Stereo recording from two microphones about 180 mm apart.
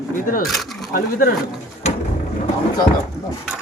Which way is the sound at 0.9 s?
50° left (ahead or behind).